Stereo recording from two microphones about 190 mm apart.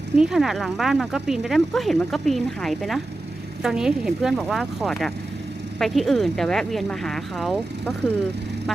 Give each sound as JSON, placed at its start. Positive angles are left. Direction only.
{"t": 0.2, "sound": "speech", "side_deg": 0}